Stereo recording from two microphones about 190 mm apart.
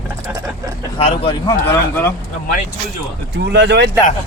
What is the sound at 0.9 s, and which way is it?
Speech, 30° left (ahead or behind).